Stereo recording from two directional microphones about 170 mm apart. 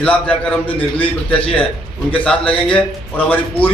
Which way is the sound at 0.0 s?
5° left (ahead or behind).